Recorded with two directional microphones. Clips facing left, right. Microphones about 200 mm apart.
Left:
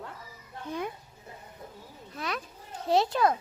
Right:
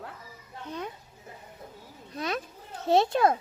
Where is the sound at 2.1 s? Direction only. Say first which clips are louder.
Right 4 dB; 20° right (ahead or behind).